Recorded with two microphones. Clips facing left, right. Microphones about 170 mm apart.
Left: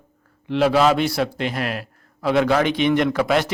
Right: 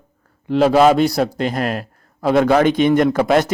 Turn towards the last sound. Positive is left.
turn(degrees=-45)  # may be behind; listen again after turning